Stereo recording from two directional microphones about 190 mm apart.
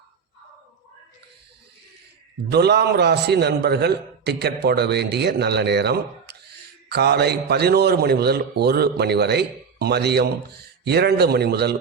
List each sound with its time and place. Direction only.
2.5 s a man's voice: 60° right (ahead or behind)